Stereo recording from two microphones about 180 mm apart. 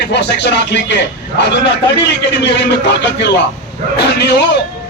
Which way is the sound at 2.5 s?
70° left (ahead or behind).